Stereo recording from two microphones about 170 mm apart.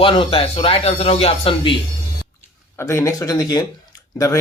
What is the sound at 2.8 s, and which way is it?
Speech, 15° left (ahead or behind).